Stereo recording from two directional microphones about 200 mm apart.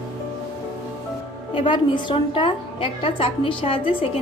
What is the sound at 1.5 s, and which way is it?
A woman's voice, 25° left (ahead or behind).